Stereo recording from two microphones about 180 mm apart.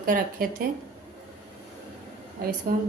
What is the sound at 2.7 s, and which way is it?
Speech, 55° right (ahead or behind).